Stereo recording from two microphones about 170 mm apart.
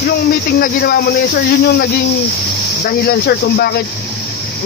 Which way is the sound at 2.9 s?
65° left (ahead or behind).